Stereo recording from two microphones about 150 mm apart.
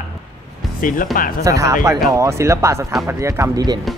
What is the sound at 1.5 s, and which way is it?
Speech, 20° right (ahead or behind).